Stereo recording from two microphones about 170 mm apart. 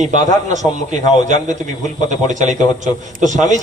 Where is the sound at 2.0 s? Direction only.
45° right (ahead or behind).